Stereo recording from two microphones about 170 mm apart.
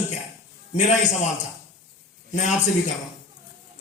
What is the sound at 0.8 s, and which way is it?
Speech, 45° left (ahead or behind).